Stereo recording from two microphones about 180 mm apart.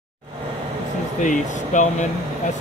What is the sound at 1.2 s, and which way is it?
Speech, 45° left (ahead or behind).